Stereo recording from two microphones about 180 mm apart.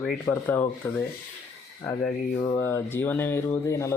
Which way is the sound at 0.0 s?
5° left (ahead or behind).